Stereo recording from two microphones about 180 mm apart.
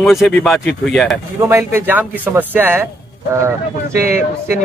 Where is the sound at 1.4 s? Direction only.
15° right (ahead or behind).